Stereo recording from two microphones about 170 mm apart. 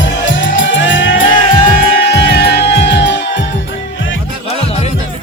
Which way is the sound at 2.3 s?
80° left.